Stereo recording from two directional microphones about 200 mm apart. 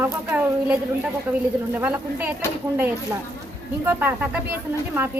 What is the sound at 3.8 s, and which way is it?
Speech, 10° right (ahead or behind).